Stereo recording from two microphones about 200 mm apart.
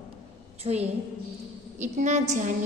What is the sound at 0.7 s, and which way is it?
A woman's voice, 30° right (ahead or behind).